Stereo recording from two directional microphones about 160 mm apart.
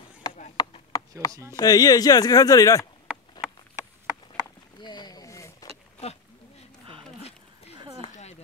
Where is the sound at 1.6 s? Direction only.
25° left (ahead or behind).